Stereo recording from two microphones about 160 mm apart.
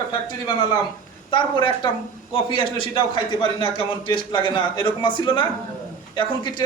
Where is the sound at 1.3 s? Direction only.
30° left (ahead or behind).